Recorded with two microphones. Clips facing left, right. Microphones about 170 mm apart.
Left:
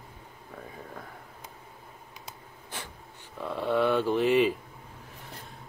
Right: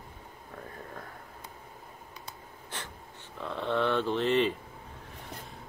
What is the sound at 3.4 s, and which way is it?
Speech, 10° left (ahead or behind).